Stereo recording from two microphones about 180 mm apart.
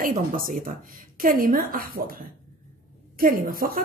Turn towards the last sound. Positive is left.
turn(degrees=-50)  # may be behind; listen again after turning